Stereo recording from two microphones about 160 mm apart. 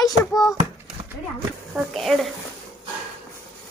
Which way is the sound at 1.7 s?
Centre (ahead or behind).